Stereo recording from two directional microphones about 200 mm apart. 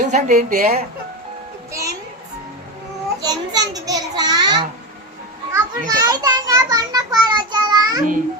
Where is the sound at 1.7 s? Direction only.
15° right (ahead or behind).